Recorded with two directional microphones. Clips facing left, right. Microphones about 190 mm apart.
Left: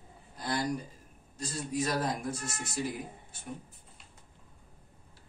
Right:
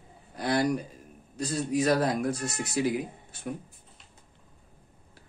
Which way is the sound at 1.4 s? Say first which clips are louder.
Right 7 dB; 75° right (ahead or behind).